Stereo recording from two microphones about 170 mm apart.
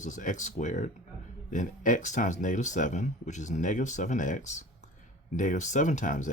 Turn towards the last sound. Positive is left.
turn(degrees=50)  # may be behind; listen again after turning